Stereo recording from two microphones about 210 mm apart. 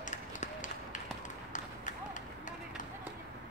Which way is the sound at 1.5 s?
35° left (ahead or behind).